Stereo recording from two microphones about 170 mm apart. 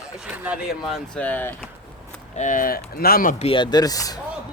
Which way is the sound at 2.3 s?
45° left (ahead or behind).